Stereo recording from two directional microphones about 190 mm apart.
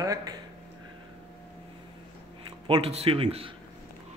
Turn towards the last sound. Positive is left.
turn(degrees=-30)  # may be behind; listen again after turning